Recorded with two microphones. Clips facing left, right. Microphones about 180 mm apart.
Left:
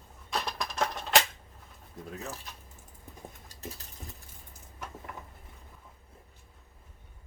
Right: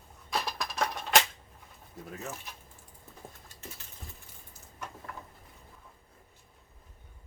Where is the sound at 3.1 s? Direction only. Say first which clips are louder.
Left 2 dB; 15° left (ahead or behind).